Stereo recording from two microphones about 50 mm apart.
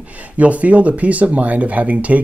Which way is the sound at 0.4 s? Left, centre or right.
Right.